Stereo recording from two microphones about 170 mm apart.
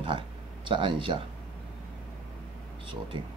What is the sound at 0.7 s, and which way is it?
Speech, 30° right (ahead or behind).